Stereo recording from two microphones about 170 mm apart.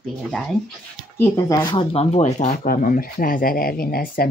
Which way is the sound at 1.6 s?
35° left (ahead or behind).